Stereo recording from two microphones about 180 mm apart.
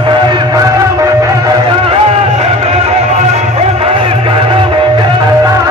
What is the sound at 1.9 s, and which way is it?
Music, 35° right (ahead or behind).